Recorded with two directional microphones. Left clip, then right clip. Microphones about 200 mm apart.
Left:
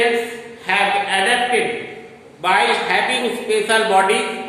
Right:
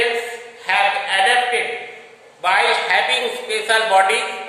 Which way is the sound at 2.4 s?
5° right (ahead or behind).